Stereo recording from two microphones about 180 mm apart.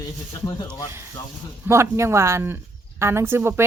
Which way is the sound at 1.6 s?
15° right (ahead or behind).